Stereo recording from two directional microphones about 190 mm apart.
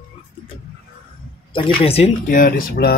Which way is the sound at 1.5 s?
30° left (ahead or behind).